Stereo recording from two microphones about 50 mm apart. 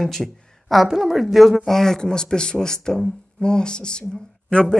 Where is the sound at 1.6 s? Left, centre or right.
Centre.